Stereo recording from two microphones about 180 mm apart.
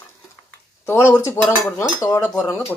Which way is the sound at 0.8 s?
15° left (ahead or behind).